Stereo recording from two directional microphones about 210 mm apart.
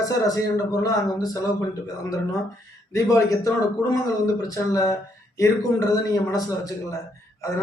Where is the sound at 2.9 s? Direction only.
15° left (ahead or behind).